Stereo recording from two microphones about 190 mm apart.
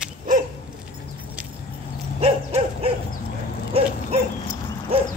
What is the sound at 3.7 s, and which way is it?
Dog, 35° right (ahead or behind).